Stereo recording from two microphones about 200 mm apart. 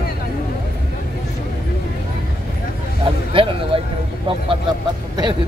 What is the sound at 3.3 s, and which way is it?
Speech, 25° right (ahead or behind).